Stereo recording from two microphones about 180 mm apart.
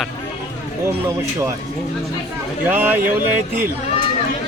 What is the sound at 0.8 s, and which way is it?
Speech, 15° right (ahead or behind).